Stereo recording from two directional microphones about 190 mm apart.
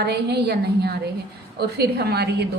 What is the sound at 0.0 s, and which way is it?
A woman's voice, 60° right (ahead or behind).